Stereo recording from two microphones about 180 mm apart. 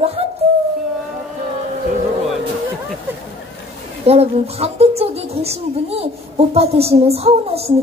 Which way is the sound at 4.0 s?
35° right (ahead or behind).